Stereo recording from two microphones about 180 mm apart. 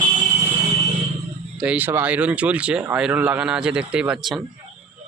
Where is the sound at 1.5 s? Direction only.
10° right (ahead or behind).